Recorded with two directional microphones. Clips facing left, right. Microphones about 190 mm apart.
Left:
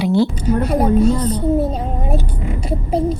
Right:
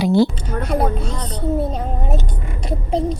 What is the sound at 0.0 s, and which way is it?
Speech, 40° right (ahead or behind).